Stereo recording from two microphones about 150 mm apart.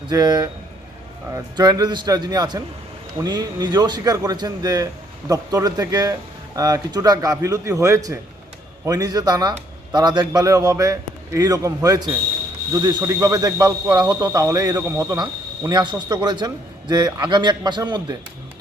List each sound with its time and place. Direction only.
0.1 s speech: 25° right (ahead or behind)